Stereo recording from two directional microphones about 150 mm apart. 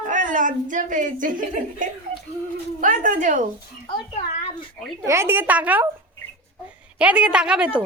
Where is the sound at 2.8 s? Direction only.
60° right (ahead or behind).